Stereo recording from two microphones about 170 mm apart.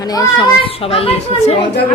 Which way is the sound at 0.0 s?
20° left (ahead or behind).